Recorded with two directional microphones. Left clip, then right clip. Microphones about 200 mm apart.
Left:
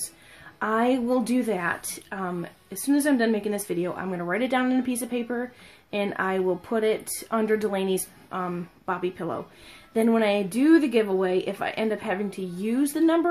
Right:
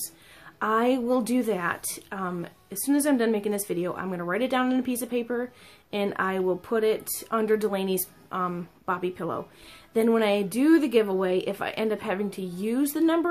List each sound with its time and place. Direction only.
0.6 s a woman's voice: centre (ahead or behind)